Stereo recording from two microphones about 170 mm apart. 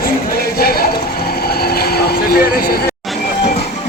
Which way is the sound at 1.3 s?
65° left (ahead or behind).